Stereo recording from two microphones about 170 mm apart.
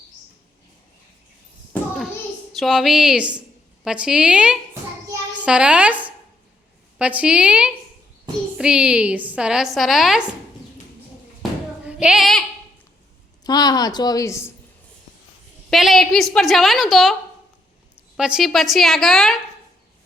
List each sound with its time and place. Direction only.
2.5 s a woman's voice: centre (ahead or behind)
11.9 s speech: 5° right (ahead or behind)
13.4 s a woman's voice: 25° left (ahead or behind)
15.7 s a woman's voice: centre (ahead or behind)
18.2 s a woman's voice: 5° right (ahead or behind)